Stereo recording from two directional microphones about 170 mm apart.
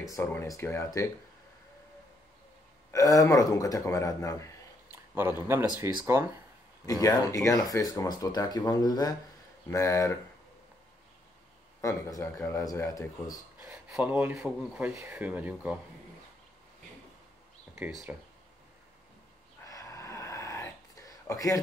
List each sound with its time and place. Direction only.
0.1 s speech: 10° left (ahead or behind)
2.9 s speech: 20° left (ahead or behind)
4.9 s a sound: 10° right (ahead or behind)
5.4 s speech: 10° right (ahead or behind)
6.9 s speech: 20° left (ahead or behind)
11.8 s speech: 15° left (ahead or behind)
13.6 s speech: 10° right (ahead or behind)
17.7 s speech: 10° right (ahead or behind)
19.6 s a sound: 20° left (ahead or behind)